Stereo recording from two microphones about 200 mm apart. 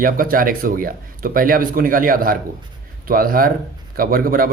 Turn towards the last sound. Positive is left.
turn(degrees=-45)  # may be behind; listen again after turning